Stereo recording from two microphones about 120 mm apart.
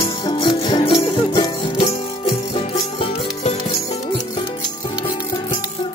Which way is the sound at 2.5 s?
55° left (ahead or behind).